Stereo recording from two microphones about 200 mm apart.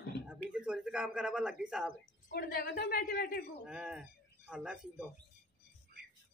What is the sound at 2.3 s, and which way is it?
A woman's voice, 50° left (ahead or behind).